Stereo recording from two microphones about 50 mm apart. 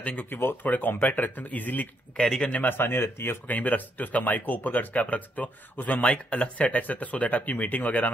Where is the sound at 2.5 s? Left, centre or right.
Left.